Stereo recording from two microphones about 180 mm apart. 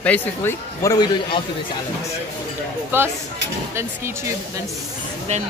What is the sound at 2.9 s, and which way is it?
Speech, 10° right (ahead or behind).